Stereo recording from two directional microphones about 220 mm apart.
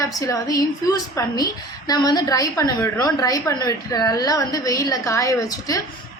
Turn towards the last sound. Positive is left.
turn(degrees=15)  # may be behind; listen again after turning